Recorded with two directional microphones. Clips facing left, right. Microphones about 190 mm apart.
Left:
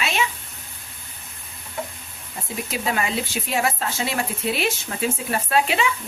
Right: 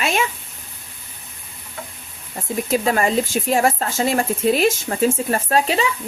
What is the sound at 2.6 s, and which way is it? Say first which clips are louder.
Speech: right 7 dB; 45° right (ahead or behind).